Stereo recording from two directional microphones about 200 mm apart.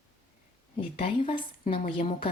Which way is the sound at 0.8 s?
25° left (ahead or behind).